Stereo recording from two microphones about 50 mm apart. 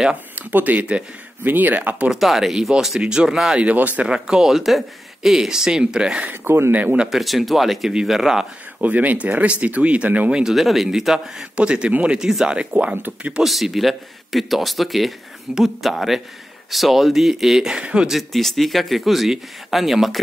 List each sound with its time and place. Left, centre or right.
0.1 s speech: right
1.4 s speech: right
2.0 s speech: centre
3.7 s speech: right
4.1 s speech: centre
6.3 s speech: right
6.7 s speech: right
7.1 s speech: centre
8.8 s speech: right
10.5 s speech: centre
11.5 s speech: right
13.4 s speech: centre
18.1 s speech: centre